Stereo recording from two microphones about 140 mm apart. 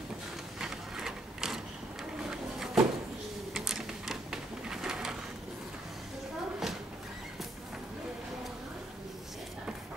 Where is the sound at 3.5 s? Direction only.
Centre (ahead or behind).